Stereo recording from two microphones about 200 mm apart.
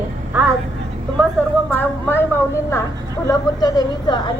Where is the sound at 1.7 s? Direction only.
10° left (ahead or behind).